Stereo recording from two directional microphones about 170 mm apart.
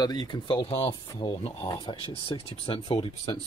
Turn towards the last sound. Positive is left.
turn(degrees=35)  # may be behind; listen again after turning